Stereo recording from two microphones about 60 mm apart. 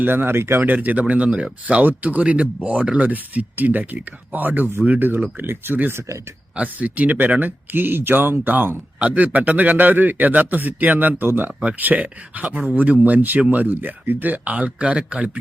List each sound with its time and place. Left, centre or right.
0.0 s speech: right
0.7 s a man's voice: right
5.9 s speech: right
6.6 s a man's voice: right